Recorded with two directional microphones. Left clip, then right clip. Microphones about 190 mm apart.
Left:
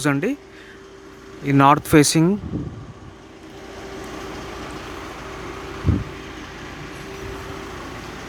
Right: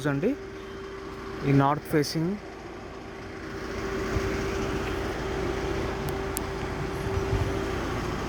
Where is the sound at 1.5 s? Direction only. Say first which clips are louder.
Left 11 dB; 30° left (ahead or behind).